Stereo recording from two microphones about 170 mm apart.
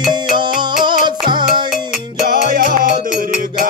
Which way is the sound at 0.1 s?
25° right (ahead or behind).